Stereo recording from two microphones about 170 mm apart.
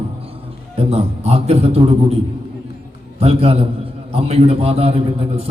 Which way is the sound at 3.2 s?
35° right (ahead or behind).